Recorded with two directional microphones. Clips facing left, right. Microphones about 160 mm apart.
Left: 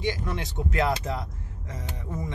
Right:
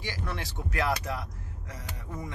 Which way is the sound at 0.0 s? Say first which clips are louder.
Left 6 dB; 20° left (ahead or behind).